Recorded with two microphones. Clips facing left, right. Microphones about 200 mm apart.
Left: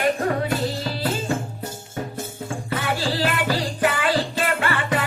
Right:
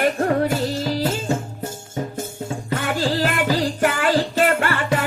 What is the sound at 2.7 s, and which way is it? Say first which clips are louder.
Music: right 3 dB; 50° right (ahead or behind).